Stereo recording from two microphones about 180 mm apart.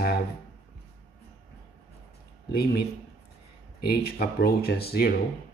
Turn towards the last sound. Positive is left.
turn(degrees=60)  # may be behind; listen again after turning